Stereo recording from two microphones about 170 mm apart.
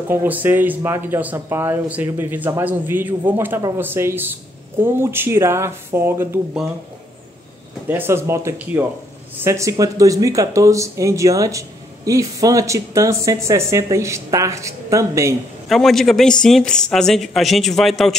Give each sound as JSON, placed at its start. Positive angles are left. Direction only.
{"t": 0.1, "sound": "speech", "side_deg": -10}
{"t": 7.9, "sound": "speech", "side_deg": -15}
{"t": 15.7, "sound": "speech", "side_deg": 0}